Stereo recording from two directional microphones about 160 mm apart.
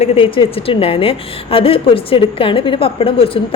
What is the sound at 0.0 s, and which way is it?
A woman's voice, 35° left (ahead or behind).